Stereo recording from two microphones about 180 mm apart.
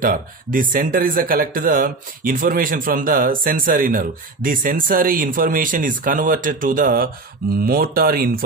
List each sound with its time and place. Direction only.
0.0 s speech: 50° right (ahead or behind)